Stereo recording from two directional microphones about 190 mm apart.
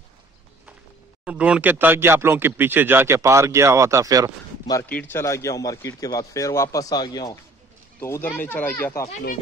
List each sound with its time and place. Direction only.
1.2 s speech: 5° right (ahead or behind)
4.8 s a man's voice: 10° left (ahead or behind)